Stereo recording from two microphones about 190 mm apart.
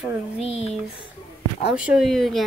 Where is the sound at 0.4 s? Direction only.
35° left (ahead or behind).